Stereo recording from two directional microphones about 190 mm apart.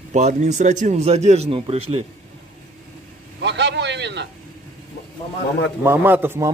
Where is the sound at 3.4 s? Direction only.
65° right (ahead or behind).